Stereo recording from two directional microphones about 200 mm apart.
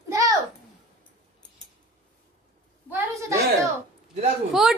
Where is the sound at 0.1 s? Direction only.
15° right (ahead or behind).